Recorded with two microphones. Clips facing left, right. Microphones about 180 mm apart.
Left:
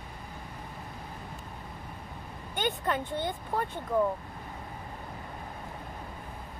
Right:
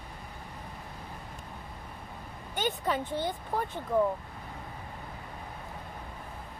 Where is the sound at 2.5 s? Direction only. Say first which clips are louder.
Even; centre (ahead or behind).